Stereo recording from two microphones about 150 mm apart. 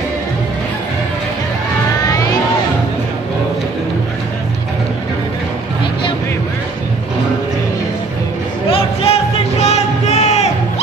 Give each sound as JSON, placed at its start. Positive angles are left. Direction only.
{"t": 8.6, "sound": "music", "side_deg": 40}